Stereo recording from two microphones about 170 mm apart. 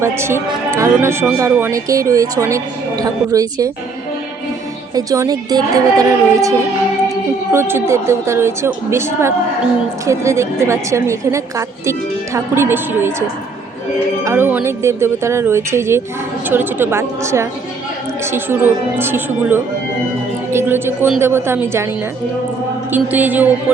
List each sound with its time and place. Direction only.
0.0 s a woman's voice: 15° right (ahead or behind)
4.9 s a woman's voice: 20° right (ahead or behind)
7.5 s a woman's voice: 15° right (ahead or behind)
14.3 s a woman's voice: 15° right (ahead or behind)
20.5 s music: 15° right (ahead or behind)
21.2 s a woman's voice: 15° right (ahead or behind)
22.9 s a woman's voice: 10° right (ahead or behind)